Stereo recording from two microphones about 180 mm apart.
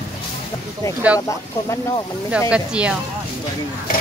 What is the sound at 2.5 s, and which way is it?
Speech, 5° right (ahead or behind).